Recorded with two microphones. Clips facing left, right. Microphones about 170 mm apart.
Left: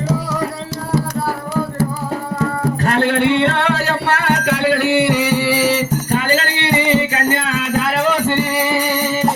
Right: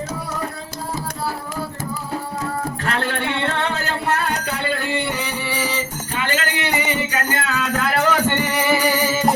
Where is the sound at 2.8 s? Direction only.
45° left (ahead or behind).